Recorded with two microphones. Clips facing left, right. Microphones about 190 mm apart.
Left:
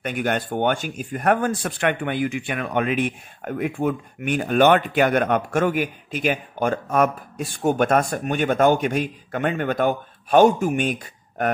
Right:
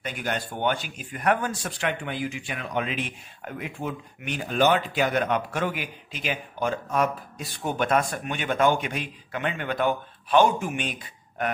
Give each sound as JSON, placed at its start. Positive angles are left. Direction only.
{"t": 0.0, "sound": "speech", "side_deg": 55}